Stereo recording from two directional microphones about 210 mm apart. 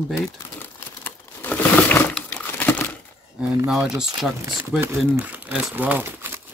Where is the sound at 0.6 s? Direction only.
10° left (ahead or behind).